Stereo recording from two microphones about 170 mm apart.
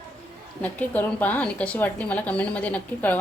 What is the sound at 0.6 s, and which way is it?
A woman's voice, 10° left (ahead or behind).